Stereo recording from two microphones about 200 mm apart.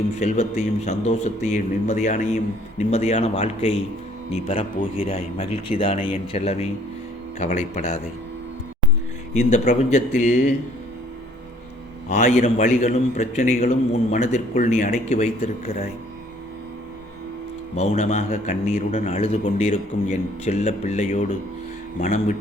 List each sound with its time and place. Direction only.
0.2 s a man's voice: 35° left (ahead or behind)
9.3 s a man's voice: 35° left (ahead or behind)
12.0 s a man's voice: 40° left (ahead or behind)
17.7 s a man's voice: 30° left (ahead or behind)